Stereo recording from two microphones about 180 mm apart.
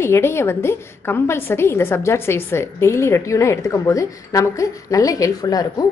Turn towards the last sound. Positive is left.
turn(degrees=20)  # may be behind; listen again after turning